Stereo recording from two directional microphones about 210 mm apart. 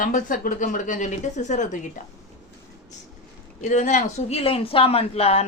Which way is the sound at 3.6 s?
35° left (ahead or behind).